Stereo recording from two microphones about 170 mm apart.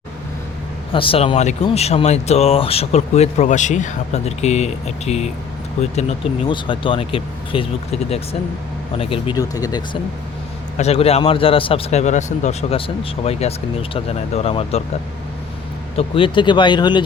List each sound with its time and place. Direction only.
0.9 s speech: 30° left (ahead or behind)
10.8 s speech: 35° left (ahead or behind)
16.0 s speech: 30° left (ahead or behind)